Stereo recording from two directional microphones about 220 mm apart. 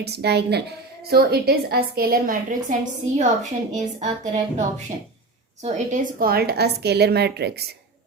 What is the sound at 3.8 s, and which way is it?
Speech, 30° right (ahead or behind).